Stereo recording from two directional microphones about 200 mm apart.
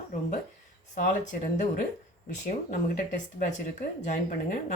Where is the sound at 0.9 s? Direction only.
40° left (ahead or behind).